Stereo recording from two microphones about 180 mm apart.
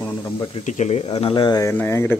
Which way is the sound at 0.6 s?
40° left (ahead or behind).